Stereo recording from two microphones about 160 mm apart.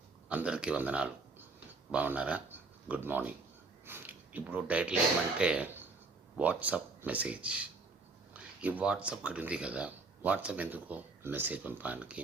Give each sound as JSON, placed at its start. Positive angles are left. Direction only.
{"t": 0.3, "sound": "speech", "side_deg": -5}